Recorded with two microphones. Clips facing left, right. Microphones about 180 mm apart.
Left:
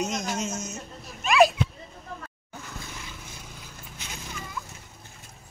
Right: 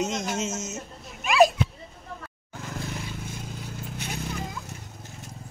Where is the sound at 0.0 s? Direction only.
25° right (ahead or behind).